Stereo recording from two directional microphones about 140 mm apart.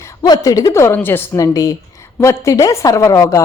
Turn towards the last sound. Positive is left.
turn(degrees=20)  # may be behind; listen again after turning